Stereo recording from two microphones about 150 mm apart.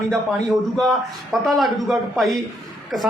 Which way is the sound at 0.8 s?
Centre (ahead or behind).